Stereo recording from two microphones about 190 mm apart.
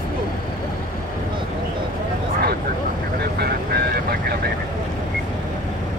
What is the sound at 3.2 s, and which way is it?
Vehicle, 55° right (ahead or behind).